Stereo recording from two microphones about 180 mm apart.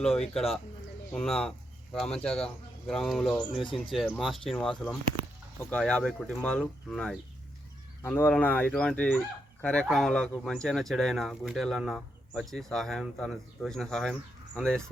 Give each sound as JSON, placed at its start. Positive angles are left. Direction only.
{"t": 0.0, "sound": "speech", "side_deg": 5}
{"t": 3.5, "sound": "speech", "side_deg": 30}
{"t": 3.9, "sound": "speech", "side_deg": 5}